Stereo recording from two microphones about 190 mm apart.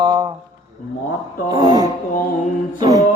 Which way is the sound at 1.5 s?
20° right (ahead or behind).